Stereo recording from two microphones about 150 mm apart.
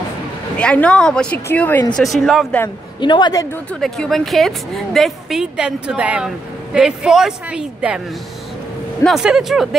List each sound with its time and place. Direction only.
0.6 s a woman's voice: 5° left (ahead or behind)
2.0 s a woman's voice: centre (ahead or behind)
3.0 s speech: 30° left (ahead or behind)
3.8 s a woman's voice: centre (ahead or behind)
9.0 s a woman's voice: 5° right (ahead or behind)